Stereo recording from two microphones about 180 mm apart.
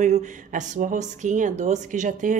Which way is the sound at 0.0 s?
40° right (ahead or behind).